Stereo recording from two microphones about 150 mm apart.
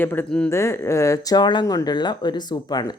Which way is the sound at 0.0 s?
15° left (ahead or behind).